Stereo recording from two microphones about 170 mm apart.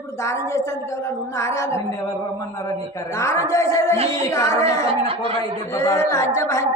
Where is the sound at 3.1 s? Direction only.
15° left (ahead or behind).